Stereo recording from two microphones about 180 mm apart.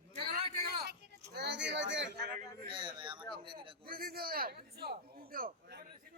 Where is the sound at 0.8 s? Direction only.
65° right (ahead or behind); by 2.1 s 80° right.